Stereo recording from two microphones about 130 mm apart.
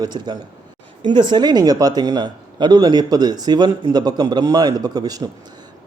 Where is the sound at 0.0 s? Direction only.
35° right (ahead or behind).